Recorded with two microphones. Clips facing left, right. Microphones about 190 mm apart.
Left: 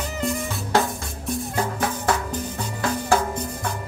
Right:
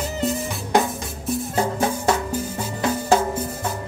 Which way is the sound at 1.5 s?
25° right (ahead or behind).